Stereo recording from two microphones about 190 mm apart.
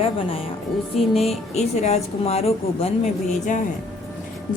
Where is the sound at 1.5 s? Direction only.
35° left (ahead or behind).